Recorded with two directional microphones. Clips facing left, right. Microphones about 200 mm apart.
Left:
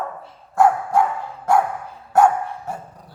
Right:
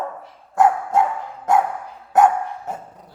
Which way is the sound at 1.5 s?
20° right (ahead or behind).